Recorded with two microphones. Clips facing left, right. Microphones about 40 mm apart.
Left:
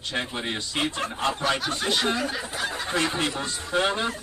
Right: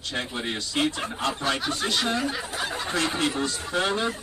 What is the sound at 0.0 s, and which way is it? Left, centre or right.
Speech, left.